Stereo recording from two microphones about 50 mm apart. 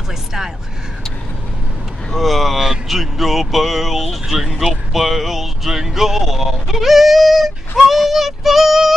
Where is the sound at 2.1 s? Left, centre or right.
Centre.